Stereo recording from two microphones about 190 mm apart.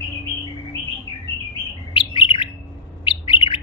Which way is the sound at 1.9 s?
25° left (ahead or behind).